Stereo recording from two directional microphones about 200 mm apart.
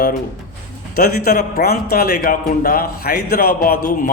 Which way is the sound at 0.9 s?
45° left (ahead or behind).